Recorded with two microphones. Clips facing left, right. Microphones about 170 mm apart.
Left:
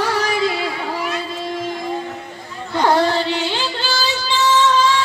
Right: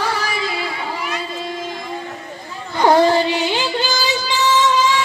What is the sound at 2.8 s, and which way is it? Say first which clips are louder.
Music: right 4 dB; 15° right (ahead or behind).